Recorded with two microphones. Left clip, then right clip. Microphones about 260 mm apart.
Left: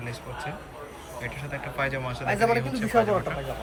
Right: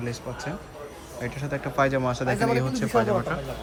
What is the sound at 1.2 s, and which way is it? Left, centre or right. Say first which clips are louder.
Speech: right 4 dB; right.